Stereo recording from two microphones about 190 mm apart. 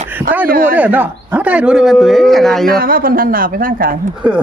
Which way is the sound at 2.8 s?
50° right (ahead or behind).